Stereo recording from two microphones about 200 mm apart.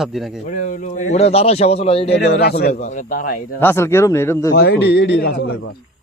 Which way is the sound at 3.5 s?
10° left (ahead or behind).